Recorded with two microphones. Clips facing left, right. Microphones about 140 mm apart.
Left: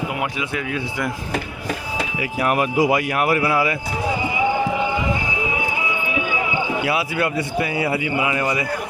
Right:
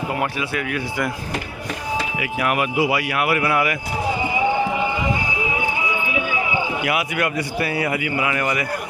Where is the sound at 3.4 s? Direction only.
25° left (ahead or behind).